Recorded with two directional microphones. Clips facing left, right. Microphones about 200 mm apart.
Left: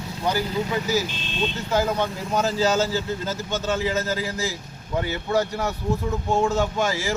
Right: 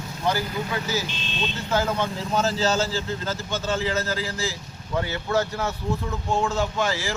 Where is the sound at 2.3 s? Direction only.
15° left (ahead or behind).